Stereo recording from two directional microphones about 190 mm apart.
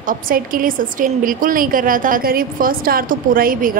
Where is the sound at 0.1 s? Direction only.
45° right (ahead or behind).